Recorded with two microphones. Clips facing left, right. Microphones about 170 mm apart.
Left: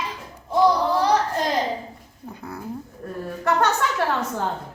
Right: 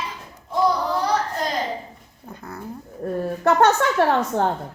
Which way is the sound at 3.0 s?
35° right (ahead or behind).